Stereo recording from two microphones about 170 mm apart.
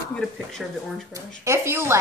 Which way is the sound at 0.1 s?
5° left (ahead or behind).